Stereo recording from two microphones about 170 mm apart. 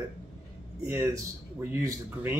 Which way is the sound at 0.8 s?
15° right (ahead or behind).